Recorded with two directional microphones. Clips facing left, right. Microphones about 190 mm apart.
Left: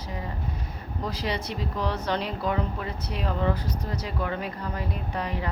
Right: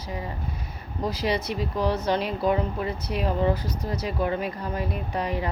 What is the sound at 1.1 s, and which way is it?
Speech, 10° right (ahead or behind).